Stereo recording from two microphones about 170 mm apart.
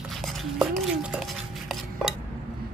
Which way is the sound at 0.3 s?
Centre (ahead or behind).